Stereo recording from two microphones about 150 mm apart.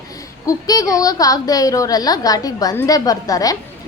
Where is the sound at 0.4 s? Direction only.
25° left (ahead or behind).